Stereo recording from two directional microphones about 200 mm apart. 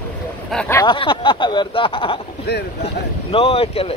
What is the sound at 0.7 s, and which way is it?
Speech, 25° left (ahead or behind).